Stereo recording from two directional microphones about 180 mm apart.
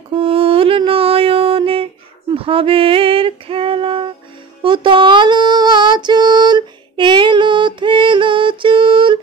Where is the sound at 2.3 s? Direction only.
30° right (ahead or behind).